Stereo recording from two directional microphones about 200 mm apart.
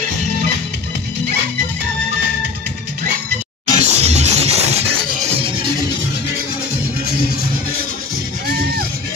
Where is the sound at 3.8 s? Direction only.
35° right (ahead or behind).